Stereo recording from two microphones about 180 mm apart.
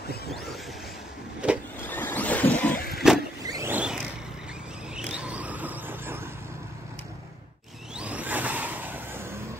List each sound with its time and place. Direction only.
1.4 s vehicle: 5° right (ahead or behind)
1.8 s vehicle: 10° left (ahead or behind)
3.0 s vehicle: 5° right (ahead or behind)
3.4 s vehicle: 20° right (ahead or behind)
3.7 s vehicle: 5° right (ahead or behind)
4.9 s a sound: 5° right (ahead or behind)
7.9 s a sound: 5° right (ahead or behind)